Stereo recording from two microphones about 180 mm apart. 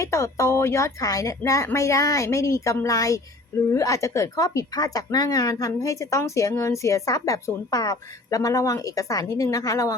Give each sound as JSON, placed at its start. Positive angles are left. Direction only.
{"t": 0.0, "sound": "a woman's voice", "side_deg": 15}